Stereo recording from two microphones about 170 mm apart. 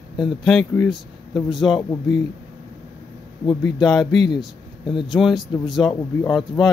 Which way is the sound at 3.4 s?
5° left (ahead or behind).